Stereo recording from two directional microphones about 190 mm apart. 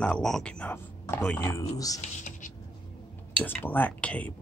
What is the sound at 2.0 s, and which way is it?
Writing, 40° left (ahead or behind).